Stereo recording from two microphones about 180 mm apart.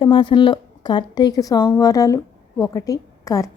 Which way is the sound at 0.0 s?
25° left (ahead or behind).